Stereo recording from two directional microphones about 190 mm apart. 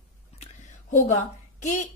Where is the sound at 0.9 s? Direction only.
40° left (ahead or behind).